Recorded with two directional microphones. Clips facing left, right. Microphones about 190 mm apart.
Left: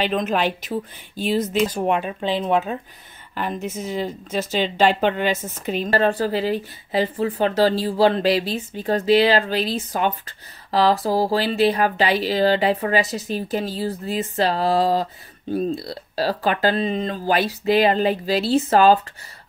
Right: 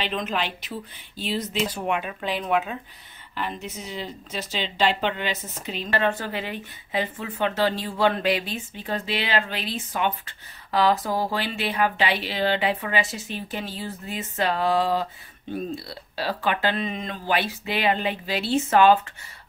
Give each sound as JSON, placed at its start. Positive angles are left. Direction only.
{"t": 0.0, "sound": "speech", "side_deg": 45}
{"t": 3.3, "sound": "speech", "side_deg": 45}